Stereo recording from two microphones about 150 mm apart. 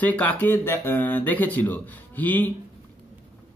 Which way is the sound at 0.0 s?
10° left (ahead or behind).